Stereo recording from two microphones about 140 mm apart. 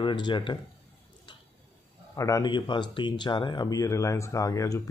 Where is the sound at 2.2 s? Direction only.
25° left (ahead or behind).